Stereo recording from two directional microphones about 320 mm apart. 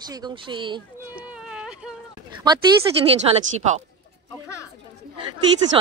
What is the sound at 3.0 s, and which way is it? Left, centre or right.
Speech, centre.